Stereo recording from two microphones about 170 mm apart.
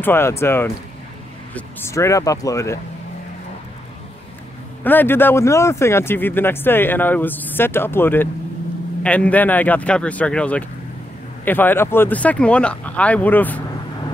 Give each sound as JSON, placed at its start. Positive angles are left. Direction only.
{"t": 0.0, "sound": "speech", "side_deg": 15}
{"t": 4.8, "sound": "speech", "side_deg": 10}